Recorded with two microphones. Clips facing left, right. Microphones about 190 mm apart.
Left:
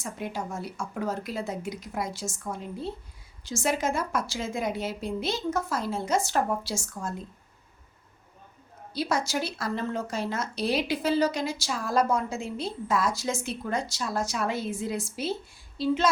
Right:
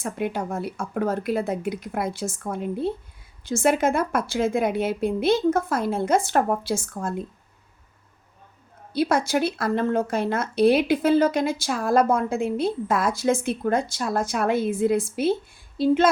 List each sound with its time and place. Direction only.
0.0 s speech: 60° right (ahead or behind)
8.9 s speech: 55° right (ahead or behind)
15.8 s female singing: 55° right (ahead or behind)